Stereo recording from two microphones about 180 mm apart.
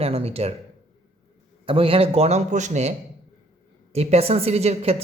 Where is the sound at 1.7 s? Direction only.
30° right (ahead or behind).